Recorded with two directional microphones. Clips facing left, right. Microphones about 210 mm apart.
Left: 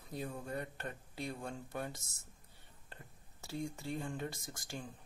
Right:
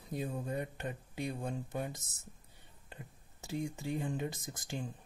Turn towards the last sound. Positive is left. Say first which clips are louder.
# right 4 dB
turn(degrees=-20)  # may be behind; listen again after turning